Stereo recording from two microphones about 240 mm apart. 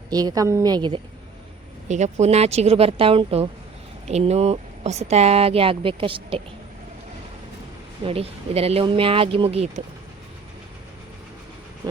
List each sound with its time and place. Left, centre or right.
0.1 s a woman's voice: centre
8.0 s speech: right